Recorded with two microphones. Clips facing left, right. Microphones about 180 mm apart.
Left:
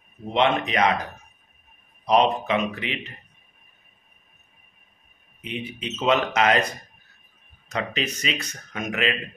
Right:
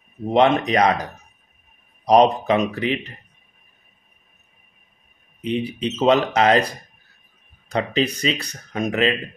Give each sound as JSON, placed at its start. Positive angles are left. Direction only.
{"t": 0.3, "sound": "speech", "side_deg": -40}
{"t": 2.0, "sound": "speech", "side_deg": -40}
{"t": 5.4, "sound": "speech", "side_deg": -35}